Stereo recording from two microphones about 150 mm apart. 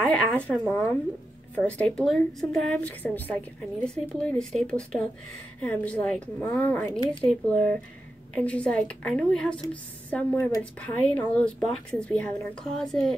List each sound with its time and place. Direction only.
0.0 s speech: 10° left (ahead or behind)
10.3 s speech: 20° left (ahead or behind)
10.6 s speech: 10° left (ahead or behind)